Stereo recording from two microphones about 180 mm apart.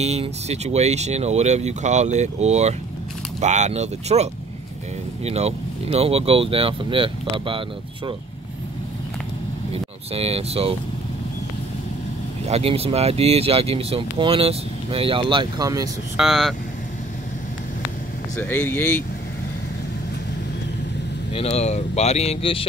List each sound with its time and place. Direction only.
0.0 s speech: 35° right (ahead or behind)
9.7 s speech: 35° right (ahead or behind)
12.4 s speech: 35° right (ahead or behind)
16.2 s speech: centre (ahead or behind)
18.4 s speech: 10° left (ahead or behind)
21.3 s speech: 35° left (ahead or behind)